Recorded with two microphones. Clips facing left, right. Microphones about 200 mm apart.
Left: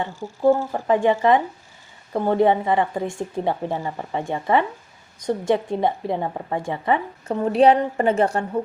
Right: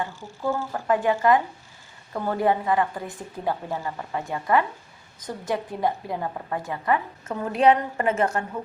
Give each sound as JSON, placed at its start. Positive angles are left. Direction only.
{"t": 0.0, "sound": "a woman's voice", "side_deg": 25}